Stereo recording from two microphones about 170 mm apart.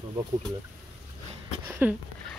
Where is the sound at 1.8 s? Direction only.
10° right (ahead or behind).